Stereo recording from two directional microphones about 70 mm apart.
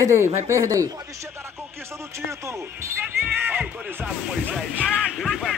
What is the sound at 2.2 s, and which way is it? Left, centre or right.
Speech, right.